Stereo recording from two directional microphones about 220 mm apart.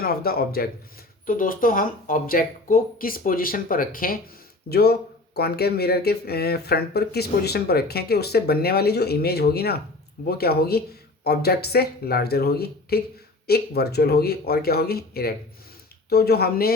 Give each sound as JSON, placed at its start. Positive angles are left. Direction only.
{"t": 0.0, "sound": "speech", "side_deg": 45}